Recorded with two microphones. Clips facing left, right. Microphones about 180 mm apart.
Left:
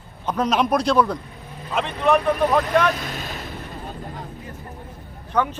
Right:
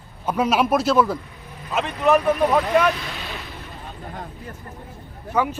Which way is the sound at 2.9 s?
45° left (ahead or behind).